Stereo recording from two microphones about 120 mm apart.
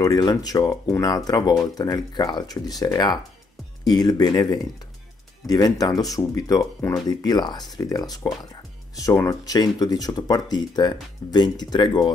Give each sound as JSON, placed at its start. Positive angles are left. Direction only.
{"t": 0.0, "sound": "speech", "side_deg": 35}